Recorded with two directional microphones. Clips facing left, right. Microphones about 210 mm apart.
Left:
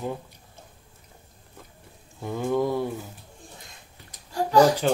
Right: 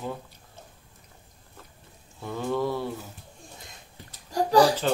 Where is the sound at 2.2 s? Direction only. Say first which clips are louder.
Left 3 dB; 15° left (ahead or behind).